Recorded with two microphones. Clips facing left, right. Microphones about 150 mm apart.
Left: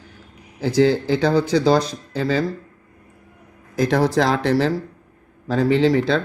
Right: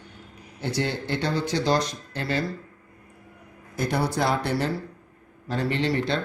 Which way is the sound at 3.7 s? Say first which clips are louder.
Left 8 dB; 90° left.